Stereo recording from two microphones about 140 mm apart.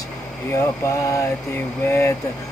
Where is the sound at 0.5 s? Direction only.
20° left (ahead or behind).